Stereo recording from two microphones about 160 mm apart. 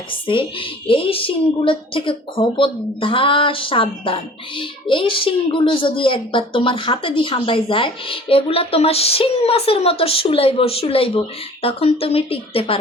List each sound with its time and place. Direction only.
0.1 s speech: 30° left (ahead or behind)